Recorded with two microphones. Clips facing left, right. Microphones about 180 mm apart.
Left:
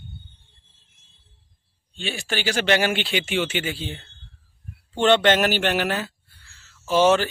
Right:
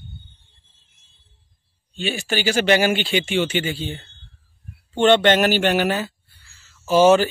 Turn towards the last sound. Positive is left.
turn(degrees=-5)  # may be behind; listen again after turning